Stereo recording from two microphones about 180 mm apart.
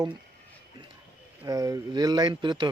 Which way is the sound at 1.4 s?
20° right (ahead or behind).